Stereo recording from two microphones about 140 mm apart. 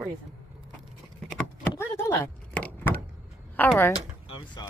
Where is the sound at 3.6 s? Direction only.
10° left (ahead or behind).